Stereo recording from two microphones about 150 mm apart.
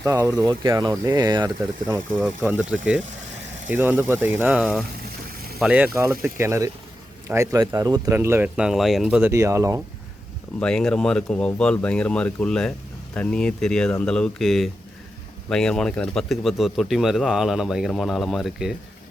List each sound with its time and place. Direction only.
0.0 s speech: 25° right (ahead or behind)
2.1 s speech: 5° right (ahead or behind)
5.0 s boiling: 90° right
5.5 s speech: 5° right (ahead or behind)
9.3 s speech: 20° right (ahead or behind)
10.6 s speech: 5° left (ahead or behind)